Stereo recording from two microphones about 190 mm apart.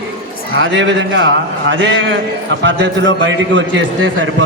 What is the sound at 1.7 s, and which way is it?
A man's voice, 75° right (ahead or behind).